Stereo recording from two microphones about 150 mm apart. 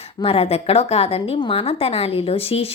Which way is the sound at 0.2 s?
40° left (ahead or behind).